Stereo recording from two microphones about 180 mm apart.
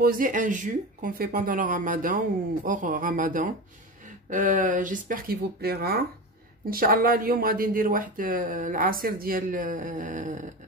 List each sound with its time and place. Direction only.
0.0 s speech: 50° right (ahead or behind)